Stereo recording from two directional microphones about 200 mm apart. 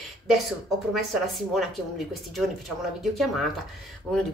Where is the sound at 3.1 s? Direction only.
Centre (ahead or behind).